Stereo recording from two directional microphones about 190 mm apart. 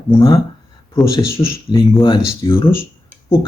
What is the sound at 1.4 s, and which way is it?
Speech, 20° left (ahead or behind).